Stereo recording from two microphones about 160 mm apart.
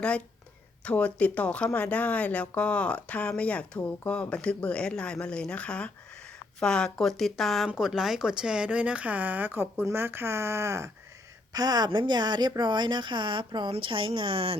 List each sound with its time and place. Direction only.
0.9 s speech: 10° left (ahead or behind); by 14.6 s 35° right (ahead or behind)